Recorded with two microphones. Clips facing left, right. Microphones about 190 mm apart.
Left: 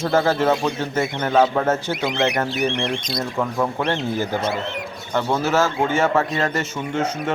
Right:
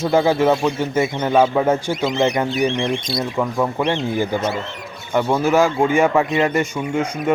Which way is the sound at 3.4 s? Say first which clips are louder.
Right 2 dB; 5° right (ahead or behind).